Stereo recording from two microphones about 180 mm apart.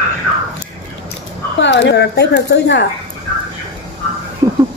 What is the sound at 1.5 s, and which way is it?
Speech, 80° left.